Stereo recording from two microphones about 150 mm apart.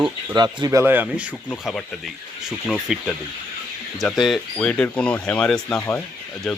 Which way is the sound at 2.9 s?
5° right (ahead or behind).